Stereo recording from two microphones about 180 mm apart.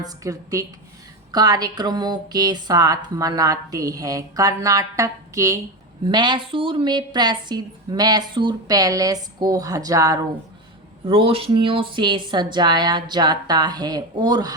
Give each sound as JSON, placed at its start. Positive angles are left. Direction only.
{"t": 0.0, "sound": "a woman's voice", "side_deg": -15}
{"t": 11.0, "sound": "speech", "side_deg": -30}